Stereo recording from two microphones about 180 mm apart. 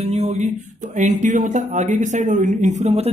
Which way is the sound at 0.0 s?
35° right (ahead or behind).